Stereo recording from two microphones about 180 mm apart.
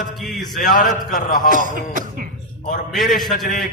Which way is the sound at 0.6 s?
45° left (ahead or behind).